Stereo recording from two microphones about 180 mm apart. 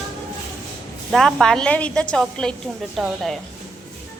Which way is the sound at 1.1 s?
5° left (ahead or behind).